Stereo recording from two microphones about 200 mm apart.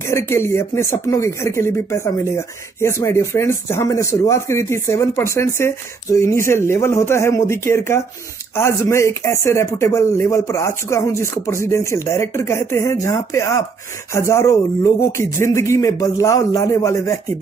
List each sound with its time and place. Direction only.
0.1 s speech: 15° left (ahead or behind)